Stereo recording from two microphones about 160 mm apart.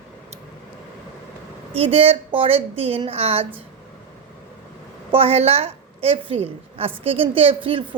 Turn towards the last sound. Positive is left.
turn(degrees=-35)  # may be behind; listen again after turning